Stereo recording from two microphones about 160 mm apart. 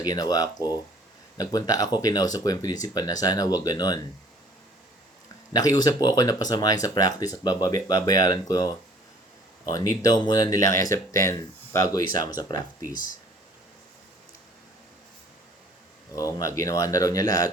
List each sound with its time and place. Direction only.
0.0 s speech: 25° left (ahead or behind)
5.5 s speech: 25° left (ahead or behind)
16.1 s speech: 20° left (ahead or behind)